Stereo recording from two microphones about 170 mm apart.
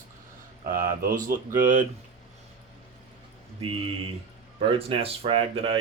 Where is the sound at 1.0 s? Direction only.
60° right (ahead or behind).